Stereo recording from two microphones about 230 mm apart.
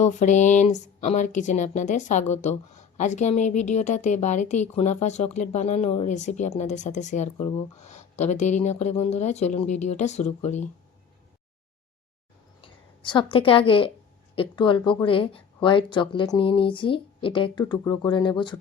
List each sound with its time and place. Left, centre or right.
0.0 s speech: left
12.6 s a sound: left
13.3 s speech: left